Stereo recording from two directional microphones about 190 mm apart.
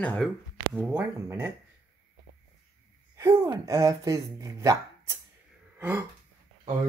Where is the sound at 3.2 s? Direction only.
20° right (ahead or behind).